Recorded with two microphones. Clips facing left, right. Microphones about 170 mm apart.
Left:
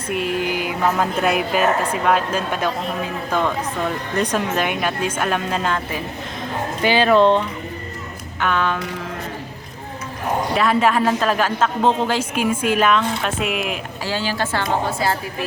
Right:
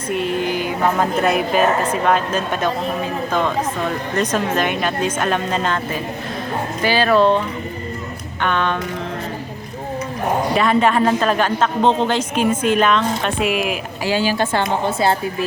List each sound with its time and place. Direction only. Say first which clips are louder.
0.1 s mantra: right 2 dB; 5° left (ahead or behind)
1.4 s speech: right 2 dB; 10° left (ahead or behind)
4.2 s speech: right 1 dB; 10° left (ahead or behind)
6.8 s speech: left 1 dB; 20° left (ahead or behind)
8.4 s a woman's voice: right 1 dB; 5° left (ahead or behind)
10.5 s a woman's voice: right 1 dB; centre (ahead or behind)
14.0 s a woman's voice: right 5 dB; 15° right (ahead or behind)